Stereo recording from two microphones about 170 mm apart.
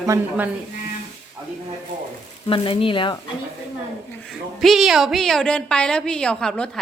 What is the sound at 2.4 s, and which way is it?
Speech, 30° left (ahead or behind).